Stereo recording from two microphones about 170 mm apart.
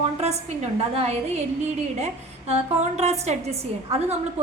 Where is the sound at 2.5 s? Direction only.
40° right (ahead or behind).